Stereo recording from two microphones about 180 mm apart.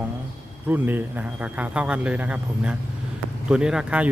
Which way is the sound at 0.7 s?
10° right (ahead or behind).